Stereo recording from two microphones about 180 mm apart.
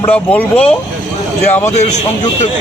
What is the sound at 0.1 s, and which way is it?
Speech, 10° left (ahead or behind).